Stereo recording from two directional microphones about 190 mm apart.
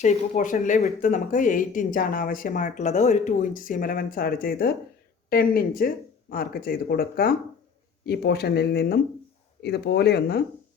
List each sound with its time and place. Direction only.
0.0 s speech: 40° left (ahead or behind); by 10.4 s 60° left (ahead or behind)